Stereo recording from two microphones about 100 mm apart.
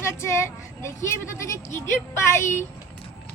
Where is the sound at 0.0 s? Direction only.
30° left (ahead or behind).